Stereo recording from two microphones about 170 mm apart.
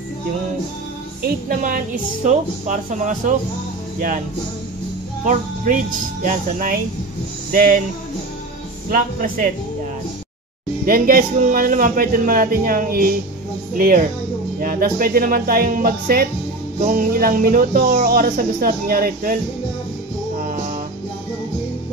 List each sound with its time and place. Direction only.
1.2 s a woman's voice: 55° right (ahead or behind)
5.2 s a woman's voice: 50° right (ahead or behind)
8.9 s speech: 55° right (ahead or behind)
10.9 s speech: 55° right (ahead or behind)
20.4 s music: 50° right (ahead or behind)